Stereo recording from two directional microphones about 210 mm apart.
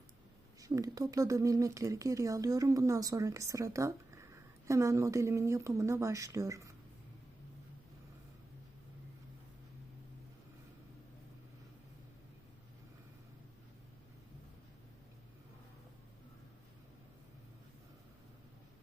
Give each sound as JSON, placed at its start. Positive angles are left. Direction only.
{"t": 0.6, "sound": "speech", "side_deg": -15}